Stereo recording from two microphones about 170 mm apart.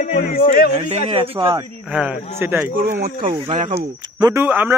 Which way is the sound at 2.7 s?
60° right (ahead or behind).